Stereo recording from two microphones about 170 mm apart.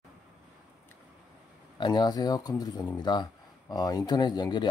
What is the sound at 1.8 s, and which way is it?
Speech, 25° left (ahead or behind).